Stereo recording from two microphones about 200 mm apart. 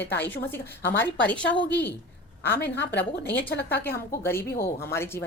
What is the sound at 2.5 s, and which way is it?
Speech, 55° left (ahead or behind).